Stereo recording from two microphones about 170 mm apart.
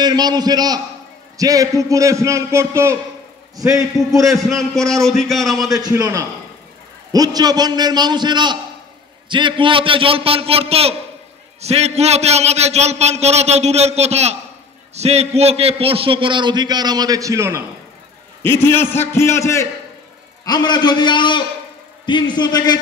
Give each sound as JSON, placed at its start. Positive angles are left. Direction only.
{"t": 0.0, "sound": "a man's voice", "side_deg": -25}
{"t": 4.3, "sound": "a man's voice", "side_deg": 0}
{"t": 5.9, "sound": "a man's voice", "side_deg": -20}
{"t": 18.4, "sound": "a man's voice", "side_deg": 15}